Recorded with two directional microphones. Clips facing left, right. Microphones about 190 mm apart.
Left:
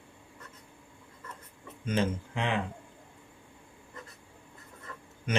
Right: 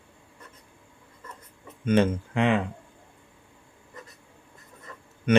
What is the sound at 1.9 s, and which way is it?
Speech, 60° right (ahead or behind).